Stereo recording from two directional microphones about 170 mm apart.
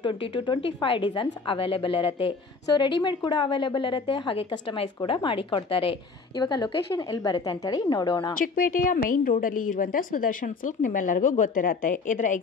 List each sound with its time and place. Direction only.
0.0 s a woman's voice: 30° left (ahead or behind)
8.4 s a woman's voice: 55° left (ahead or behind)